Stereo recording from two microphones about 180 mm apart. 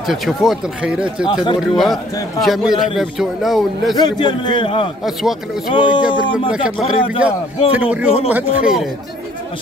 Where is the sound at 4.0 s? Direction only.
25° left (ahead or behind).